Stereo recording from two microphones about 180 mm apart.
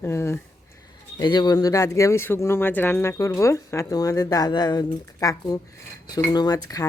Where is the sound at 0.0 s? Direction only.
15° left (ahead or behind).